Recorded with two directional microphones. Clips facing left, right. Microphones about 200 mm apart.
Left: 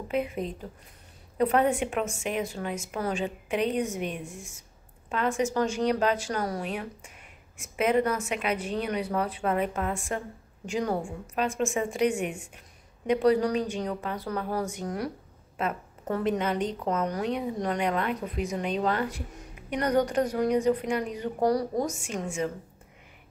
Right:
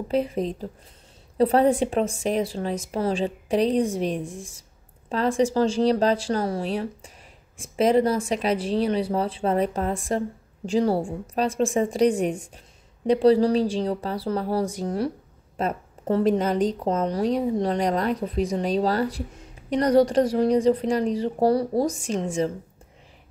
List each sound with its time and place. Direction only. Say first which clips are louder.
0.1 s speech: right 5 dB; 35° right (ahead or behind)